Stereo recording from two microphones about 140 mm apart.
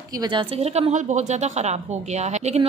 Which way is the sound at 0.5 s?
45° right (ahead or behind).